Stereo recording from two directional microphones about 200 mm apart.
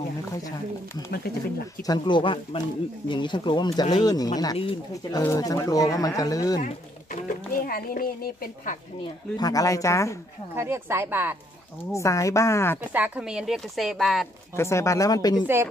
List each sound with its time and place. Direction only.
1.8 s speech: 20° left (ahead or behind)
7.6 s a woman's voice: 45° left (ahead or behind)
9.0 s speech: 20° left (ahead or behind)
10.5 s speech: 10° right (ahead or behind)
11.9 s speech: 15° left (ahead or behind)
12.9 s speech: 10° right (ahead or behind)
14.5 s speech: 15° left (ahead or behind)
15.4 s speech: 10° right (ahead or behind)